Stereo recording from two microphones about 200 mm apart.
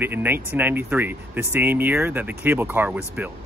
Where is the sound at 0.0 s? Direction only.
10° right (ahead or behind).